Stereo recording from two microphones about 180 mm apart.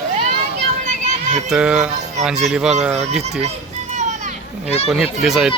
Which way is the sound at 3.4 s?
40° right (ahead or behind).